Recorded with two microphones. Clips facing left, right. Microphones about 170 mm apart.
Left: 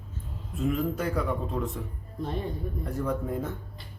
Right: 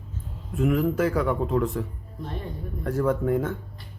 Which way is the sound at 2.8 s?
90° right.